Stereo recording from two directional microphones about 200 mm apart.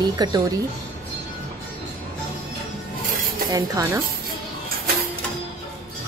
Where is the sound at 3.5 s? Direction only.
15° right (ahead or behind).